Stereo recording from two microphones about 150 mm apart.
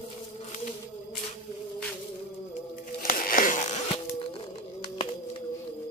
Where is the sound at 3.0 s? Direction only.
70° left (ahead or behind); by 4.3 s 40° left (ahead or behind).